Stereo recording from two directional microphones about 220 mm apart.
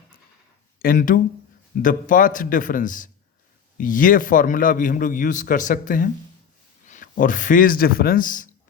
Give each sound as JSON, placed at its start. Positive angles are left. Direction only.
{"t": 0.8, "sound": "a man's voice", "side_deg": 40}